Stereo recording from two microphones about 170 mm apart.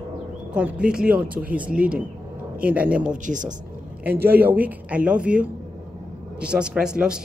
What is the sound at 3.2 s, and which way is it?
Speech, 50° right (ahead or behind).